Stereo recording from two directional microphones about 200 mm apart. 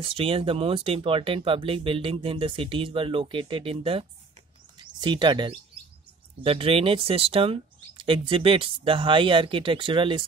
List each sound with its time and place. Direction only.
0.0 s speech: 25° right (ahead or behind)
5.0 s speech: 20° right (ahead or behind)